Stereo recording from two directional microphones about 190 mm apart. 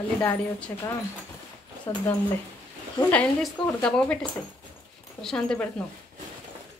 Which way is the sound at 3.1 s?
5° left (ahead or behind).